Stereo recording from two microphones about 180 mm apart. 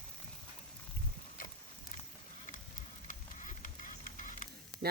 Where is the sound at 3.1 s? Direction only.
45° left (ahead or behind).